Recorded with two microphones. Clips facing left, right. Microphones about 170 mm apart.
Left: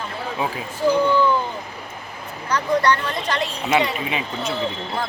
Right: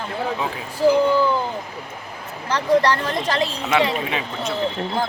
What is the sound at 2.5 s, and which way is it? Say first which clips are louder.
Speech: right 2 dB; 30° right (ahead or behind).